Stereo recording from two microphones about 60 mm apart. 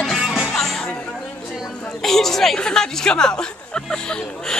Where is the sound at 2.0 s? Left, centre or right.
Centre.